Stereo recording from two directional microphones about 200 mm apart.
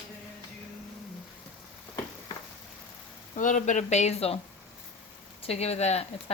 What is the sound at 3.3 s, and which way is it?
Speech, 40° left (ahead or behind).